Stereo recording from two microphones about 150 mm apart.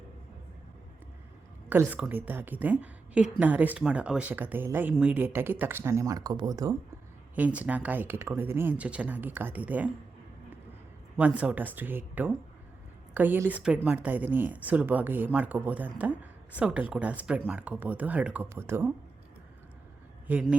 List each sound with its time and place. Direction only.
1.7 s speech: 10° right (ahead or behind)
7.3 s speech: 10° right (ahead or behind)
11.2 s speech: 10° right (ahead or behind)
20.3 s speech: 10° right (ahead or behind)